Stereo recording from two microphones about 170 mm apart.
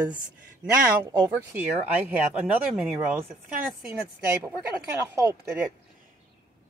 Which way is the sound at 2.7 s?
5° right (ahead or behind).